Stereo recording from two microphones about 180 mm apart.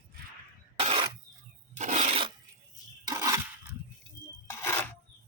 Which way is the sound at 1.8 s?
40° right (ahead or behind).